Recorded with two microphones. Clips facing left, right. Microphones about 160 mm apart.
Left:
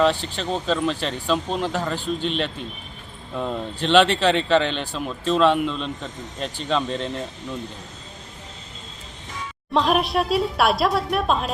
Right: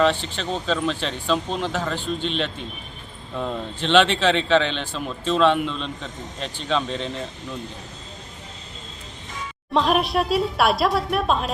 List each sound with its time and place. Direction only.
0.3 s speech: centre (ahead or behind)
9.7 s speech: centre (ahead or behind)